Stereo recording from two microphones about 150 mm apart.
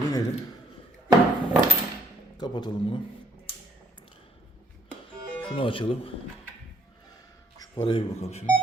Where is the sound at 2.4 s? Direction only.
30° left (ahead or behind).